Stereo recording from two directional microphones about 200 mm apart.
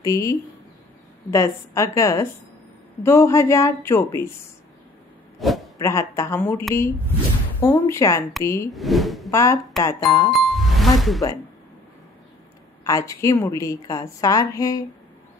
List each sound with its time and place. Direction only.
0.0 s a woman's voice: 15° left (ahead or behind)
5.4 s speech: centre (ahead or behind)
5.8 s a woman's voice: 15° left (ahead or behind)
8.7 s speech: centre (ahead or behind)
9.3 s a woman's voice: 15° left (ahead or behind)
10.3 s music: centre (ahead or behind)
12.8 s a woman's voice: 15° left (ahead or behind)